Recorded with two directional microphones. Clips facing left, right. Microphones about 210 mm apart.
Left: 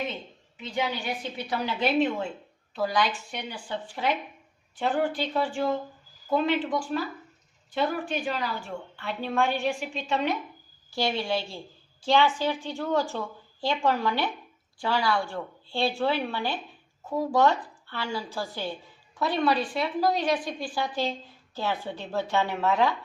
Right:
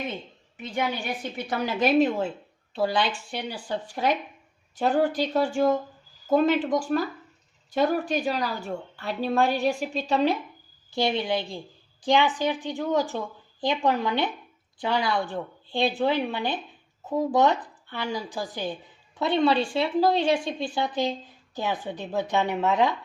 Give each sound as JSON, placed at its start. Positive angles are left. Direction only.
{"t": 0.5, "sound": "a woman's voice", "side_deg": -50}
{"t": 10.9, "sound": "a woman's voice", "side_deg": -20}